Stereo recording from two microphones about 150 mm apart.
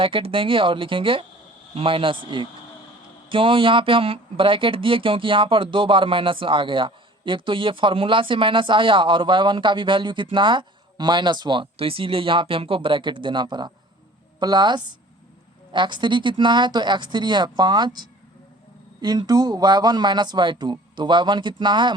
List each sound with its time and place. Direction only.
0.0 s speech: 35° right (ahead or behind)